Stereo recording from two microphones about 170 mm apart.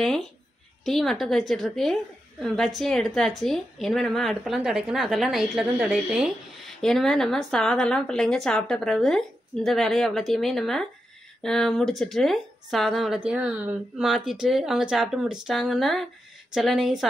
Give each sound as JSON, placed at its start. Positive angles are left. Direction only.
{"t": 0.8, "sound": "a woman's voice", "side_deg": 0}